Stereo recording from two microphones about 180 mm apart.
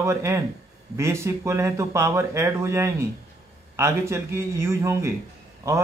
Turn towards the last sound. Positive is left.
turn(degrees=-20)  # may be behind; listen again after turning